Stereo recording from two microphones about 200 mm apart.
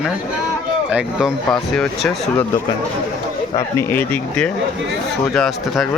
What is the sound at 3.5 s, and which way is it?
Speech, 10° left (ahead or behind).